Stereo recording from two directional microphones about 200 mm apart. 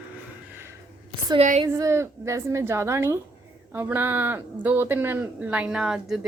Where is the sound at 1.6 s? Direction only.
15° right (ahead or behind).